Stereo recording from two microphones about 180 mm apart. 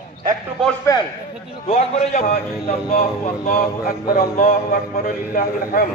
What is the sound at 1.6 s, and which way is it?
Speech, 35° left (ahead or behind).